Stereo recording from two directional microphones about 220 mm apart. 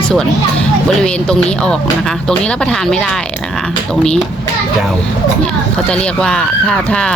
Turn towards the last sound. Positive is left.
turn(degrees=5)  # may be behind; listen again after turning